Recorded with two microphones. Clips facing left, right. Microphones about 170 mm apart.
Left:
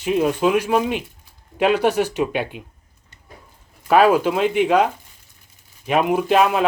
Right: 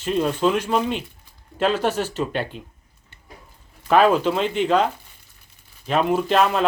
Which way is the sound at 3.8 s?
5° left (ahead or behind).